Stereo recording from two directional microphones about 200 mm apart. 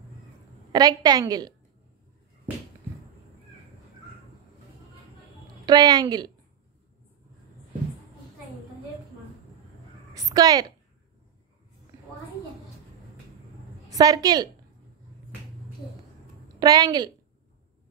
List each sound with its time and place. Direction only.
0.7 s a woman's voice: 20° right (ahead or behind)
5.7 s a woman's voice: 20° right (ahead or behind)
10.1 s a sound: 20° right (ahead or behind)
13.8 s a woman's voice: 20° right (ahead or behind)
16.5 s a woman's voice: 20° right (ahead or behind)